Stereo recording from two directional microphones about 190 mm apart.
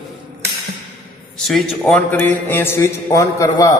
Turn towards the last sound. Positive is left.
turn(degrees=15)  # may be behind; listen again after turning